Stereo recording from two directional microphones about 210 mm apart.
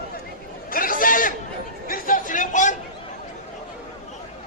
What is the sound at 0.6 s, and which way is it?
Chatter, 40° left (ahead or behind).